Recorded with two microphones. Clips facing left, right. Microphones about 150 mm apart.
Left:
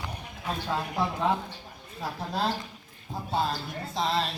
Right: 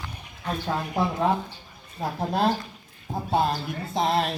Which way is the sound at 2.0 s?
55° right (ahead or behind).